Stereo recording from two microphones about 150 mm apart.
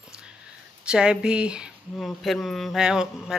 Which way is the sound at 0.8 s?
5° right (ahead or behind).